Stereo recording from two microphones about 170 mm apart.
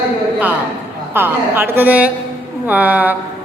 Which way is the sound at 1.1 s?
10° right (ahead or behind).